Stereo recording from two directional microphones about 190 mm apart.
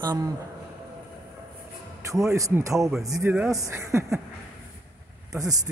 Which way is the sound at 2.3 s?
15° right (ahead or behind).